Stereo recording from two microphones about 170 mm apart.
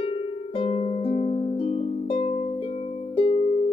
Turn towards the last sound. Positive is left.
turn(degrees=35)  # may be behind; listen again after turning